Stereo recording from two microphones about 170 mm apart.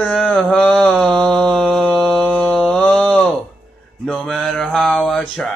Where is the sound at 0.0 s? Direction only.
5° left (ahead or behind).